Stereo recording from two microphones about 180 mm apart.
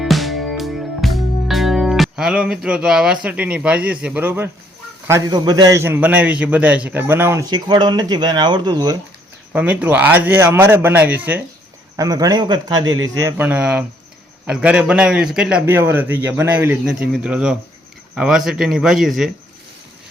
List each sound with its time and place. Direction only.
0.0 s music: centre (ahead or behind)
3.2 s a man's voice: 5° right (ahead or behind)
7.5 s speech: 25° right (ahead or behind)
9.5 s a man's voice: 10° right (ahead or behind)
11.9 s speech: 20° right (ahead or behind)
13.1 s a man's voice: 15° right (ahead or behind)